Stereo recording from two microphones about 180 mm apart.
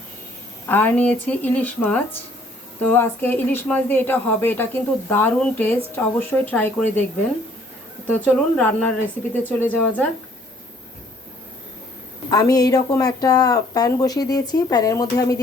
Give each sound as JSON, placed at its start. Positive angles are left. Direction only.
{"t": 0.7, "sound": "speech", "side_deg": 10}
{"t": 8.0, "sound": "speech", "side_deg": 10}
{"t": 12.3, "sound": "speech", "side_deg": 20}